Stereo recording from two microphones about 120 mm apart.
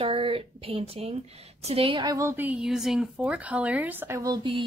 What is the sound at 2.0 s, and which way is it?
Speech, 30° right (ahead or behind).